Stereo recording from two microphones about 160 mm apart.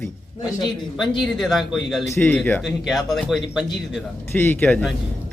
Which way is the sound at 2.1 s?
10° left (ahead or behind).